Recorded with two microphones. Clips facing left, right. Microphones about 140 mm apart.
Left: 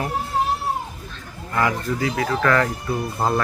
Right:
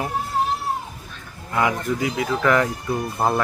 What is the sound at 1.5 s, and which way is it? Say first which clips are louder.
Speech: right 1 dB; 15° right (ahead or behind).